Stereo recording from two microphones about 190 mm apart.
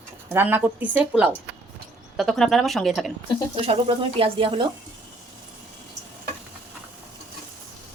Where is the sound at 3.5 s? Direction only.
30° right (ahead or behind).